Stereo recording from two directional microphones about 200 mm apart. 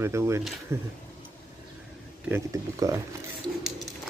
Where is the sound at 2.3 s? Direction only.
15° right (ahead or behind).